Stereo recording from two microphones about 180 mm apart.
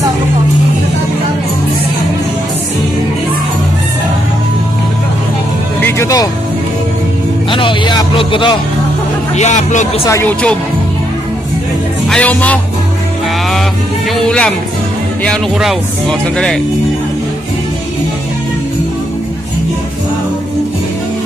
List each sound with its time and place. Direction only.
5.8 s music: 15° left (ahead or behind)
7.5 s music: 25° left (ahead or behind)
9.3 s speech: 40° left (ahead or behind)
10.0 s speech: 10° left (ahead or behind)
12.1 s speech: 10° left (ahead or behind)
14.1 s speech: 5° left (ahead or behind)